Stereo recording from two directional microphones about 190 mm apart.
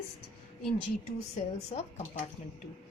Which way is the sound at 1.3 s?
35° left (ahead or behind).